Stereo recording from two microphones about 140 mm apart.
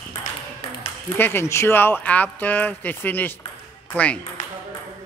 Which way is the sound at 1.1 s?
15° left (ahead or behind).